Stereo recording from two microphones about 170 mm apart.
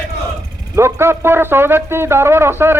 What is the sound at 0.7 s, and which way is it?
Speech, 15° right (ahead or behind).